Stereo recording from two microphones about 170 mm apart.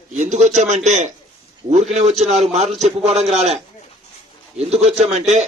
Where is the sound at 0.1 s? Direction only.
45° right (ahead or behind).